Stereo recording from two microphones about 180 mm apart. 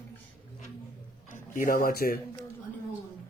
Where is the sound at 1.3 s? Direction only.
50° left (ahead or behind).